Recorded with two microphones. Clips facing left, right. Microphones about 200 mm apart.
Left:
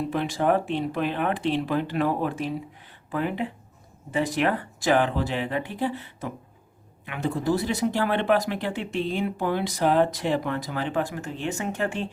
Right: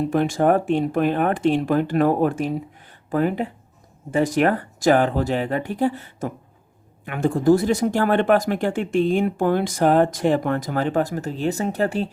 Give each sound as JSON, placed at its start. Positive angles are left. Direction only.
{"t": 0.1, "sound": "speech", "side_deg": -45}